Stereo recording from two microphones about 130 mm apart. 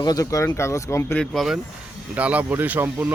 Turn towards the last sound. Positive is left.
turn(degrees=-15)  # may be behind; listen again after turning